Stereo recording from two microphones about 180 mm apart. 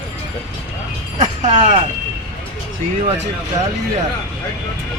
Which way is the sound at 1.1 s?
40° right (ahead or behind).